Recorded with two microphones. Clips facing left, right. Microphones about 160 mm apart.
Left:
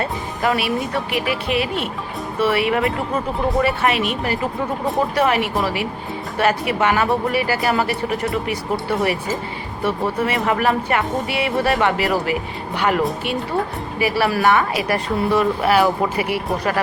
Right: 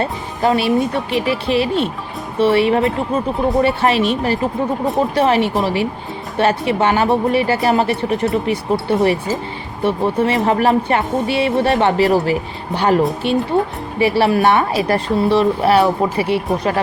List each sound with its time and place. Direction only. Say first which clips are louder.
0.0 s speech: right 3 dB; 30° right (ahead or behind)